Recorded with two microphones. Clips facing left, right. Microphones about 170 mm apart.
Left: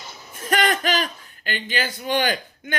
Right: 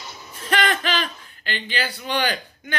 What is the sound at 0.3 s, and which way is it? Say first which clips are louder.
A man's voice: left 1 dB; 45° left (ahead or behind).